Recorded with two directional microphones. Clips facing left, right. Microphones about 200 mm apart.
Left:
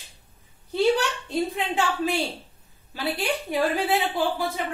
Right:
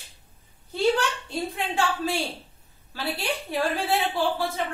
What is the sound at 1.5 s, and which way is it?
A woman's voice, 20° left (ahead or behind).